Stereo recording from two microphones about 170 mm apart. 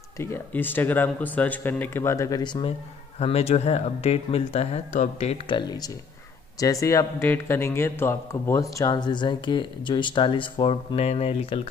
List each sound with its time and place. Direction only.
0.2 s speech: 15° left (ahead or behind)
3.2 s speech: 40° left (ahead or behind)